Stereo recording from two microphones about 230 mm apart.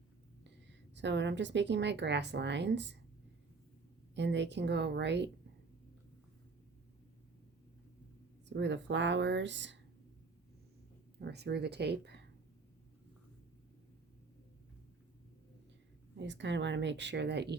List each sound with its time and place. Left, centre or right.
0.7 s a woman's voice: right
4.1 s a woman's voice: right
8.4 s a woman's voice: right
11.2 s a woman's voice: right
16.1 s a woman's voice: right